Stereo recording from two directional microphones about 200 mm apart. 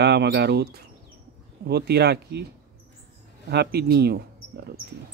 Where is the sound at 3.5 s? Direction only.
55° right (ahead or behind).